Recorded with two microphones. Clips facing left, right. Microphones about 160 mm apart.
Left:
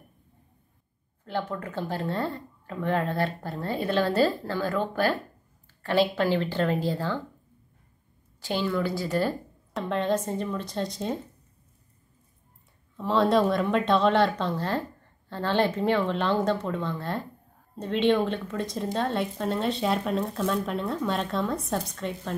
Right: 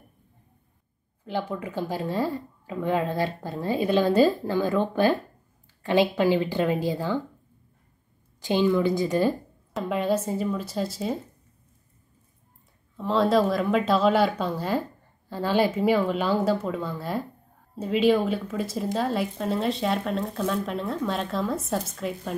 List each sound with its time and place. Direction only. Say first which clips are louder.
1.2 s a woman's voice: right 1 dB; 15° right (ahead or behind)
8.4 s a woman's voice: right 5 dB; 15° right (ahead or behind)
12.9 s a woman's voice: right 1 dB; centre (ahead or behind)